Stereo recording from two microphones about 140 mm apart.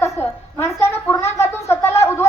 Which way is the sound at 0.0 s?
20° left (ahead or behind).